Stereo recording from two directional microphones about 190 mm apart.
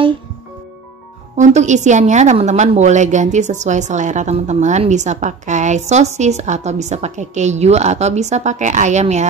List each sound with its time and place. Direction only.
1.3 s a woman's voice: 35° right (ahead or behind)